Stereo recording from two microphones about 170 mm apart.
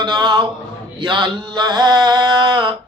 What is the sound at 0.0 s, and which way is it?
A man's voice, 25° right (ahead or behind).